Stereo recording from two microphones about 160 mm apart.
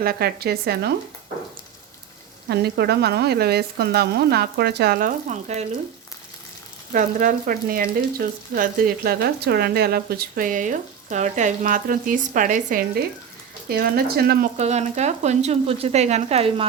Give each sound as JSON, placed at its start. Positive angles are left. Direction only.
{"t": 0.0, "sound": "speech", "side_deg": -75}
{"t": 2.5, "sound": "speech", "side_deg": -90}
{"t": 6.9, "sound": "speech", "side_deg": -55}
{"t": 13.7, "sound": "speech", "side_deg": -75}
{"t": 14.6, "sound": "speech", "side_deg": -45}